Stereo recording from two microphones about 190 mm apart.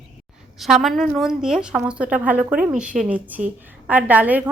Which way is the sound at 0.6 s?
Centre (ahead or behind).